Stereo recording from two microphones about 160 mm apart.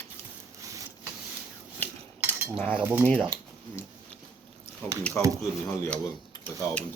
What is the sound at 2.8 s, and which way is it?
Speech, 15° right (ahead or behind).